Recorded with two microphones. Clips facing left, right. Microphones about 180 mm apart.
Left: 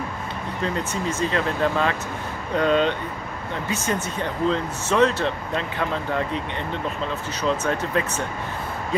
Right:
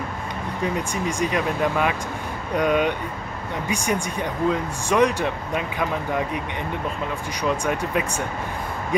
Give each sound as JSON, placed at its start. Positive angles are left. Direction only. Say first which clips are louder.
{"t": 0.6, "sound": "speech", "louder": "right 1 dB", "side_deg": -15}
{"t": 7.4, "sound": "speech", "louder": "even", "side_deg": -10}